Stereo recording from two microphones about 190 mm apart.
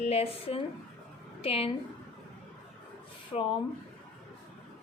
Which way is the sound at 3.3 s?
25° left (ahead or behind).